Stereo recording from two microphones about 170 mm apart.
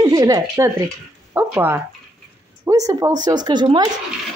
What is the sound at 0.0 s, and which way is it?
Speech, 20° right (ahead or behind).